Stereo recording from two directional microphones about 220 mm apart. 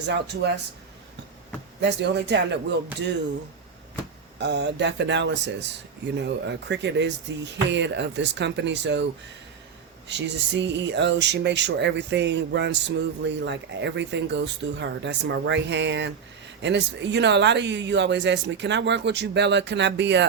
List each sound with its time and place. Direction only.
0.1 s speech: 50° right (ahead or behind)
1.8 s speech: 50° right (ahead or behind)
4.4 s speech: 50° right (ahead or behind)
10.1 s speech: 50° right (ahead or behind)